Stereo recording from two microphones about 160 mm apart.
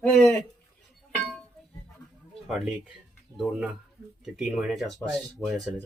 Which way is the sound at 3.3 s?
5° right (ahead or behind).